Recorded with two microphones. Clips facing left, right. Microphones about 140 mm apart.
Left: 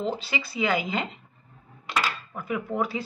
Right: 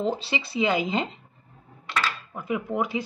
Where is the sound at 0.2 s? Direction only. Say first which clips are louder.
Right 2 dB; 25° right (ahead or behind).